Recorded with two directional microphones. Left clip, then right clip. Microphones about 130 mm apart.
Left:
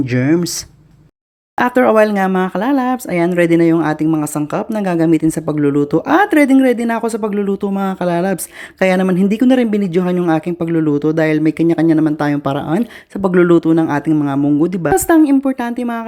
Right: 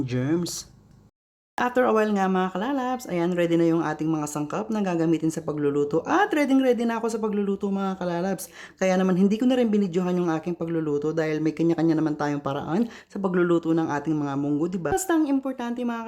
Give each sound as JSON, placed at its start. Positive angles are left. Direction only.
{"t": 0.1, "sound": "speech", "side_deg": 30}
{"t": 1.5, "sound": "speech", "side_deg": 25}
{"t": 14.3, "sound": "speech", "side_deg": 15}
{"t": 14.6, "sound": "speech", "side_deg": 30}